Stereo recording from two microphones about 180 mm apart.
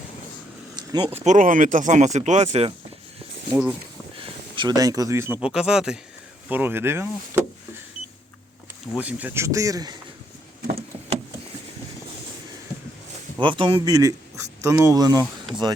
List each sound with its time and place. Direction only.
0.8 s speech: 25° right (ahead or behind)
4.2 s speech: 25° right (ahead or behind)
9.0 s speech: 10° right (ahead or behind)
13.4 s speech: 30° right (ahead or behind)